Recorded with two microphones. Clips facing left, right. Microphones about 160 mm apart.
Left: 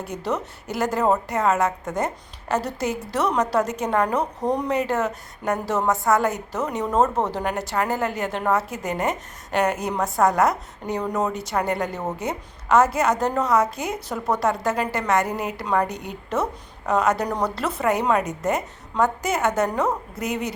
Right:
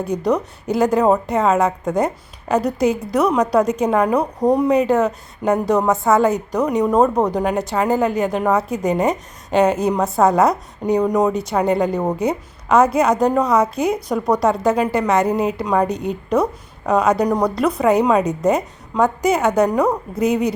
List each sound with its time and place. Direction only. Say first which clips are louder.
0.3 s a woman's voice: right 7 dB; 15° right (ahead or behind)
15.9 s a woman's voice: right 10 dB; 20° left (ahead or behind)
16.3 s a woman's voice: right 6 dB; 15° right (ahead or behind)